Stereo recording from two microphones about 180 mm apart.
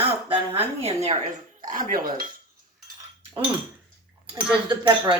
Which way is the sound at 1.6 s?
45° right (ahead or behind).